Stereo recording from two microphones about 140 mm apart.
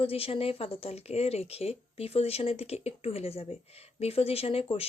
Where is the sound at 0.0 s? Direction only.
40° left (ahead or behind).